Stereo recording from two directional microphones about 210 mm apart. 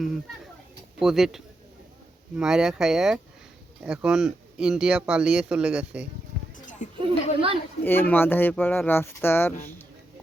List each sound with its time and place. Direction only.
0.9 s speech: centre (ahead or behind)
7.0 s speech: 25° right (ahead or behind)
7.9 s speech: 10° left (ahead or behind)